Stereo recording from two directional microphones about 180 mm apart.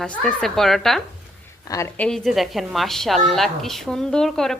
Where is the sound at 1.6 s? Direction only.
15° left (ahead or behind).